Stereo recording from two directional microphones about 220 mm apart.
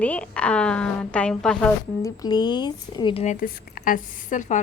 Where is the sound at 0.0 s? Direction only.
5° left (ahead or behind); by 3.3 s 25° left (ahead or behind).